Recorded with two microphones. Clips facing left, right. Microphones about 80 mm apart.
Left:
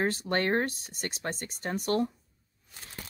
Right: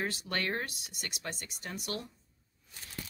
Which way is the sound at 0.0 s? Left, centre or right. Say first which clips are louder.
Left 7 dB; left.